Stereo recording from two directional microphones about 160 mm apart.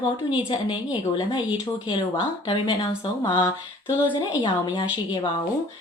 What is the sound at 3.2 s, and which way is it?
Speech, 25° left (ahead or behind).